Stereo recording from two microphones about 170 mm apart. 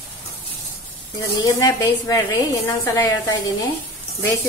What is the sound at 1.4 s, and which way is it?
A woman's voice, 20° left (ahead or behind).